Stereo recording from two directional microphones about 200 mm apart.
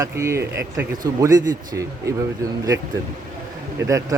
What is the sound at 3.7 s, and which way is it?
Speech, 15° right (ahead or behind).